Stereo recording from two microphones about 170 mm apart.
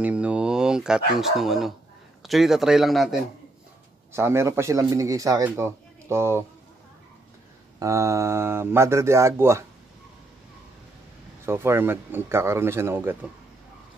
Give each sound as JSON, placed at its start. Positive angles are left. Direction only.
{"t": 0.0, "sound": "bow-wow", "side_deg": -5}
{"t": 2.2, "sound": "a man's voice", "side_deg": 0}
{"t": 4.1, "sound": "a man's voice", "side_deg": -15}
{"t": 7.8, "sound": "a man's voice", "side_deg": -15}
{"t": 11.4, "sound": "a man's voice", "side_deg": -15}